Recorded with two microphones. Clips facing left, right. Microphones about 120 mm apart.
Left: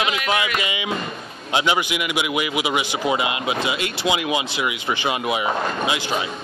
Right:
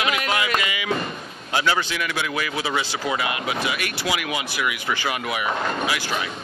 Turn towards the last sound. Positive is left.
turn(degrees=20)  # may be behind; listen again after turning